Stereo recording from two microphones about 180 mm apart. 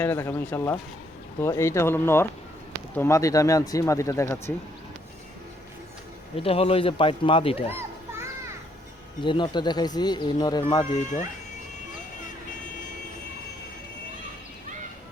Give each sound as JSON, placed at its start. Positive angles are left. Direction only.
{"t": 0.0, "sound": "speech", "side_deg": 10}
{"t": 6.3, "sound": "speech", "side_deg": 30}
{"t": 9.2, "sound": "speech", "side_deg": 25}